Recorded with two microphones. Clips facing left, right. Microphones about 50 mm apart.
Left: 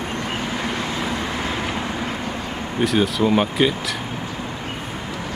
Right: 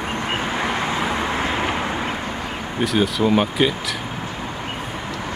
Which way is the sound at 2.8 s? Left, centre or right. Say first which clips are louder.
Even; centre.